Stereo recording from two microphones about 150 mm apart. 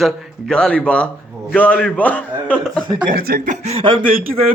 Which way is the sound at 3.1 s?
90° right.